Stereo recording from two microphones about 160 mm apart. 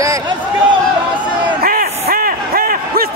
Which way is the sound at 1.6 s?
65° right (ahead or behind).